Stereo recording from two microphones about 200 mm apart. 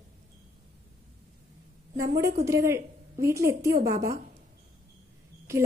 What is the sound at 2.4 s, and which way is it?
A woman's voice, 15° right (ahead or behind).